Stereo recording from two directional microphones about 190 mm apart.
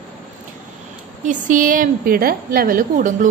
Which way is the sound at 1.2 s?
45° right (ahead or behind).